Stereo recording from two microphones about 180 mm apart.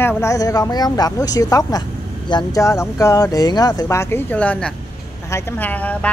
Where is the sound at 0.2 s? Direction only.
20° left (ahead or behind).